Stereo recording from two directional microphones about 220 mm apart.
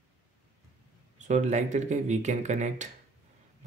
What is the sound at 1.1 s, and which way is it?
Speech, 35° right (ahead or behind).